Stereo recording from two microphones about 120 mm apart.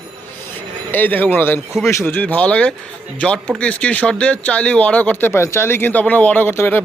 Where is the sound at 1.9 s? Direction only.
15° left (ahead or behind).